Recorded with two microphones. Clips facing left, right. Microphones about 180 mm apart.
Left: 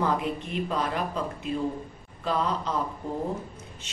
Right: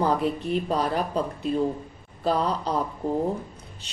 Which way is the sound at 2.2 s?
35° right (ahead or behind).